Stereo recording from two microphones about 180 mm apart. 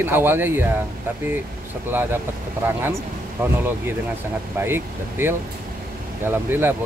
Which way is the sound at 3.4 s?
10° right (ahead or behind).